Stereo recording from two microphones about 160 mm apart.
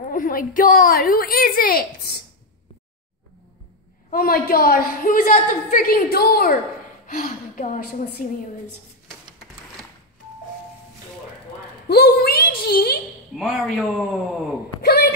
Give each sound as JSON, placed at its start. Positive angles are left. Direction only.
{"t": 0.1, "sound": "a woman's voice", "side_deg": 60}
{"t": 4.1, "sound": "a woman's voice", "side_deg": 65}
{"t": 7.1, "sound": "a woman's voice", "side_deg": 55}
{"t": 11.9, "sound": "a woman's voice", "side_deg": 80}
{"t": 13.4, "sound": "a man's voice", "side_deg": 0}
{"t": 14.8, "sound": "wail", "side_deg": 75}